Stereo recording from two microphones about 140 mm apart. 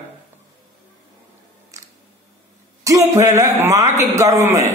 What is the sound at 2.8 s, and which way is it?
A man's voice, 25° right (ahead or behind).